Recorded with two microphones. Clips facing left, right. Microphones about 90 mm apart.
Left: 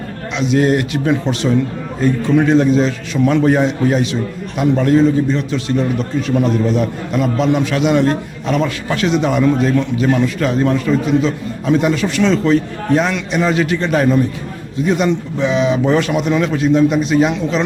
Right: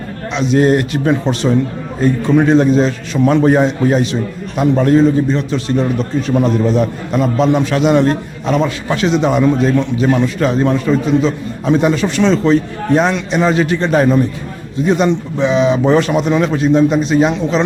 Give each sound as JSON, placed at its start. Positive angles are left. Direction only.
{"t": 0.3, "sound": "a man's voice", "side_deg": -35}